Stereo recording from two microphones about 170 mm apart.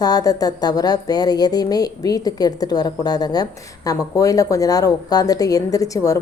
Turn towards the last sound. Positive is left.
turn(degrees=20)  # may be behind; listen again after turning